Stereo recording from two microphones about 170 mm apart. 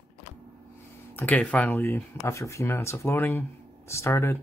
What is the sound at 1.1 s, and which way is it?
Speech, 10° left (ahead or behind).